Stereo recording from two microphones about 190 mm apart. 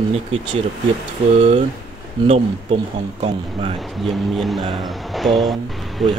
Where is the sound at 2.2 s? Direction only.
30° right (ahead or behind).